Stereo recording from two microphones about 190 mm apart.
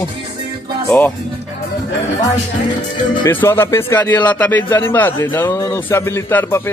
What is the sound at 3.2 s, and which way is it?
Speech, 10° left (ahead or behind).